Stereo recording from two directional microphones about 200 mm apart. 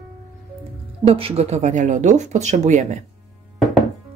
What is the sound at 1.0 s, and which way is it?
Speech, 30° right (ahead or behind).